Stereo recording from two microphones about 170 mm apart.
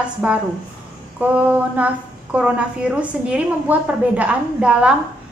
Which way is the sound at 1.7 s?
10° right (ahead or behind).